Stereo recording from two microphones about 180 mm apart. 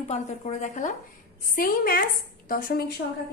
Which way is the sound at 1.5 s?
55° left (ahead or behind).